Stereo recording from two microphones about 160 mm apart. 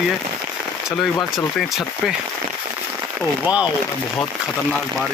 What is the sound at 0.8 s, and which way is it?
Speech, centre (ahead or behind).